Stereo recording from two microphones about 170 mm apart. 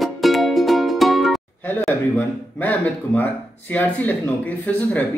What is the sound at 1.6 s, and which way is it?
A man's voice, 10° left (ahead or behind).